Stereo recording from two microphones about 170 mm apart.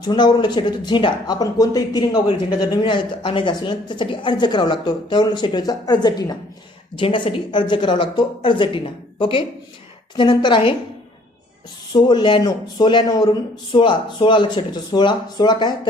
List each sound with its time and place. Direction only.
0.0 s speech: 25° left (ahead or behind)
11.9 s speech: 25° left (ahead or behind)